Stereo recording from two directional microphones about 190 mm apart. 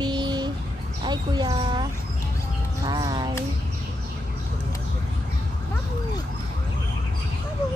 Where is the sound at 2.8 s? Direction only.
20° right (ahead or behind).